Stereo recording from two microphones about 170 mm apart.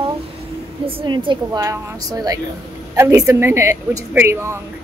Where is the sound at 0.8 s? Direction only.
30° right (ahead or behind).